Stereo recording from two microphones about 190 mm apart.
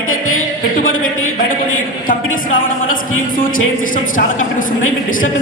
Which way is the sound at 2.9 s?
45° left (ahead or behind).